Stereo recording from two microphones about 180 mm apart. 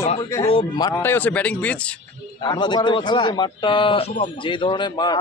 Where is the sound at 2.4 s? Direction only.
25° left (ahead or behind).